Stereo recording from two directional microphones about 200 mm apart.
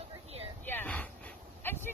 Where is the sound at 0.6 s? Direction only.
10° left (ahead or behind).